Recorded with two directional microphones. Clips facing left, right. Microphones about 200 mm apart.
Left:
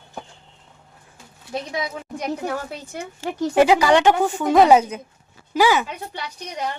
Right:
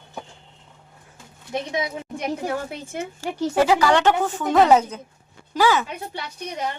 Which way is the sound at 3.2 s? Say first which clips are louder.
Left 3 dB; 20° left (ahead or behind).